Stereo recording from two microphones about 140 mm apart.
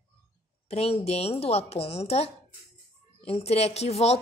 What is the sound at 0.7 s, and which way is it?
Speech, 45° left (ahead or behind).